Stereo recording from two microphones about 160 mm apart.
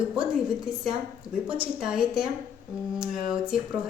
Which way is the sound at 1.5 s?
5° right (ahead or behind).